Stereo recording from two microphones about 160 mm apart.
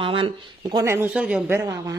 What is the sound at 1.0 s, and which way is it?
Speech, 10° right (ahead or behind).